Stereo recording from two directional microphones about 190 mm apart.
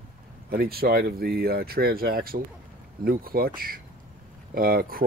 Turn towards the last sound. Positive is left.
turn(degrees=-50)  # may be behind; listen again after turning